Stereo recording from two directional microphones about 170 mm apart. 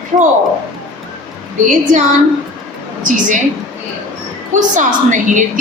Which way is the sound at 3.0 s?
50° right (ahead or behind).